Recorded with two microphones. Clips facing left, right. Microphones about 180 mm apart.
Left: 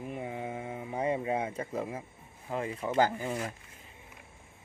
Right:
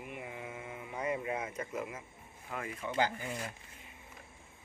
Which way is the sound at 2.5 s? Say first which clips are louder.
Left 6 dB; 30° left (ahead or behind).